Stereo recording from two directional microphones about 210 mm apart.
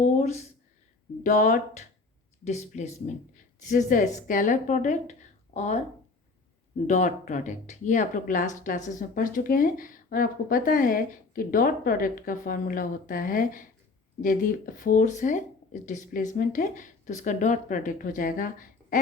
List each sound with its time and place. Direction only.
0.0 s a sound: 35° left (ahead or behind)
1.2 s speech: 35° left (ahead or behind)
6.8 s speech: 35° left (ahead or behind)